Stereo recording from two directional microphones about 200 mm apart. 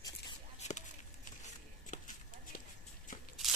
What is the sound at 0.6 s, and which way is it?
Basketball bounce, 35° left (ahead or behind).